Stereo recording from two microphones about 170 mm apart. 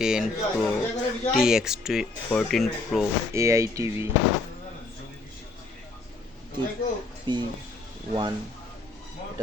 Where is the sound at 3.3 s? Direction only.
15° right (ahead or behind).